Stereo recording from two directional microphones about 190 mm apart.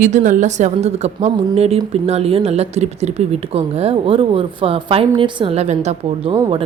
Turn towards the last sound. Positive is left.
turn(degrees=-30)  # may be behind; listen again after turning